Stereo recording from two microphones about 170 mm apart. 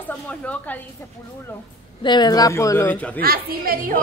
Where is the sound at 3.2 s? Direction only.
60° right (ahead or behind).